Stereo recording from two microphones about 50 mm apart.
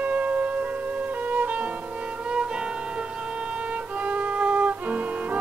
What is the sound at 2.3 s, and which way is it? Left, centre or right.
Music, centre.